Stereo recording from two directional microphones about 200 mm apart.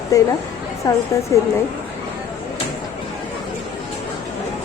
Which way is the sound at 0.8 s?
20° left (ahead or behind).